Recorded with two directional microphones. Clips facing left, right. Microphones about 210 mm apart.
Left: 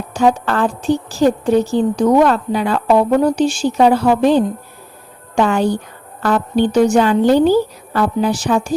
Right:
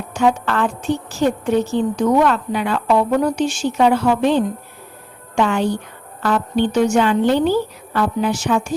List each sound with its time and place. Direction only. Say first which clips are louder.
0.1 s a woman's voice: left 3 dB; 35° left (ahead or behind)